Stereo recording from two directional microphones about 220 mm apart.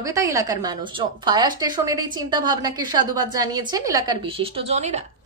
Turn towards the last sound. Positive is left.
turn(degrees=-30)  # may be behind; listen again after turning